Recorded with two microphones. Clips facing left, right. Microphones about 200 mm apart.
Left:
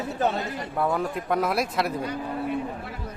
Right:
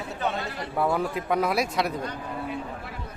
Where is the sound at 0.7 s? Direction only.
Centre (ahead or behind).